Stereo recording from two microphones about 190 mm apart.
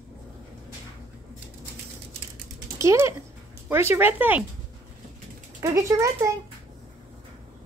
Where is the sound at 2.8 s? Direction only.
15° right (ahead or behind).